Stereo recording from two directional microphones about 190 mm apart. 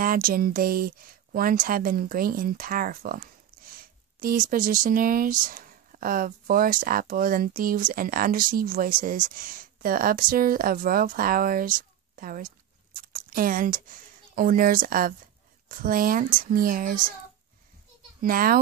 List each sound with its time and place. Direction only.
0.0 s speech: 50° right (ahead or behind)
18.2 s speech: 50° right (ahead or behind)